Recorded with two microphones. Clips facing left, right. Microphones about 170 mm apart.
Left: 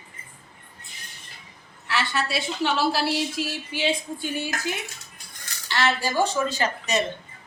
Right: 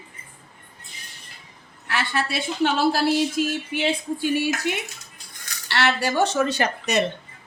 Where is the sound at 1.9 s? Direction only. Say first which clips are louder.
Right 1 dB; 50° right (ahead or behind).